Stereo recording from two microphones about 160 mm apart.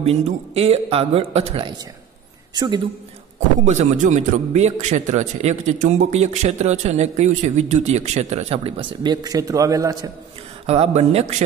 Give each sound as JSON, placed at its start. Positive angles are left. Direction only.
{"t": 0.0, "sound": "speech", "side_deg": -40}
{"t": 2.5, "sound": "a man's voice", "side_deg": -25}
{"t": 3.3, "sound": "speech", "side_deg": -50}
{"t": 10.7, "sound": "speech", "side_deg": -40}